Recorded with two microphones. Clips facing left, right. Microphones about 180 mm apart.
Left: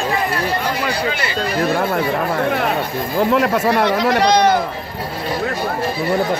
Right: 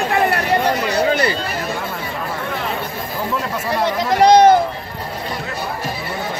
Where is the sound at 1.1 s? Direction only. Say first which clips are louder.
Right 6 dB; 40° right (ahead or behind).